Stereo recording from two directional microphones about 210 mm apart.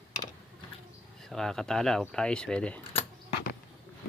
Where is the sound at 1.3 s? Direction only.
Centre (ahead or behind).